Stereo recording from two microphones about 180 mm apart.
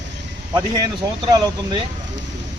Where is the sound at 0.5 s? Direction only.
25° right (ahead or behind).